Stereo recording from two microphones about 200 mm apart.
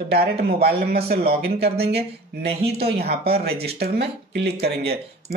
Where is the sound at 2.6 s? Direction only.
50° right (ahead or behind).